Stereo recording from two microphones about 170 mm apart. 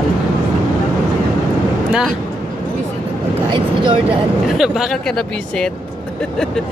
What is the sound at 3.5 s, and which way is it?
Speech, 30° right (ahead or behind).